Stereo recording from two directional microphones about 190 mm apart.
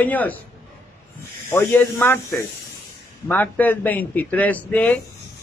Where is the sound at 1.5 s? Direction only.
10° left (ahead or behind).